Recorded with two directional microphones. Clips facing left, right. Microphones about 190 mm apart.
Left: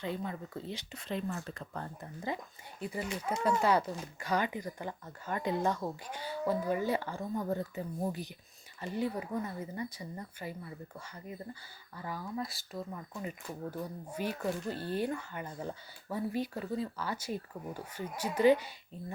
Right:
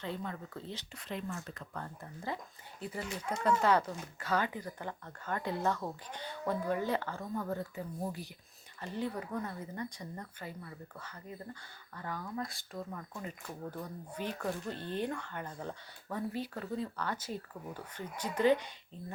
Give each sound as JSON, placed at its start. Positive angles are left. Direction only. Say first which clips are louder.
{"t": 0.0, "sound": "speech", "louder": "left 2 dB", "side_deg": 15}
{"t": 0.9, "sound": "speech", "louder": "left 4 dB", "side_deg": 30}
{"t": 2.0, "sound": "speech", "louder": "left 3 dB", "side_deg": 15}
{"t": 8.8, "sound": "speech", "louder": "left 3 dB", "side_deg": 10}